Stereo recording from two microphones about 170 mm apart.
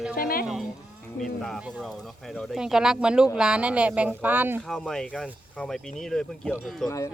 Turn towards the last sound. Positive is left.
turn(degrees=0)  # may be behind; listen again after turning